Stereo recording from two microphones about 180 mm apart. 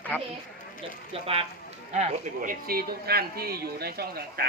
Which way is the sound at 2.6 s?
55° right (ahead or behind).